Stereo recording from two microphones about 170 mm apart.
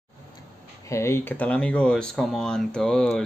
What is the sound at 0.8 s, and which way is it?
Speech, 15° left (ahead or behind).